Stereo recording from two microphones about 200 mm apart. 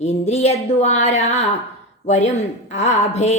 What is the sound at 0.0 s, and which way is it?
Speech, 35° left (ahead or behind).